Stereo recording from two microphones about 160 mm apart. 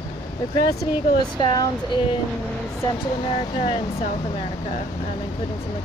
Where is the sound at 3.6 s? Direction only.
35° left (ahead or behind).